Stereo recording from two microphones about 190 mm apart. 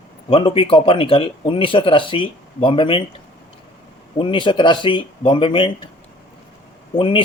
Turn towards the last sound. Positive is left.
turn(degrees=30)  # may be behind; listen again after turning